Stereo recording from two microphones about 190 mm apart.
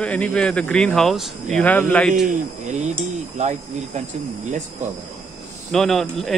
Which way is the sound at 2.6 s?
40° right (ahead or behind).